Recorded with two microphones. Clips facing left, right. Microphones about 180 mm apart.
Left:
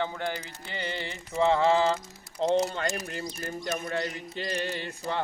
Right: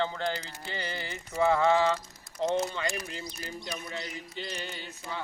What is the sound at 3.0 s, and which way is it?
Cutlery, 55° left (ahead or behind).